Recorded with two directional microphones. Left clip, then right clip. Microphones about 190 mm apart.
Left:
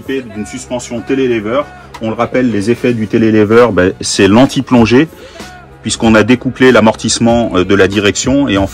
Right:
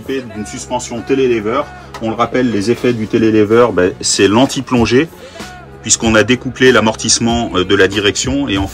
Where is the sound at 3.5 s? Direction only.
35° left (ahead or behind); by 7.3 s 10° left (ahead or behind).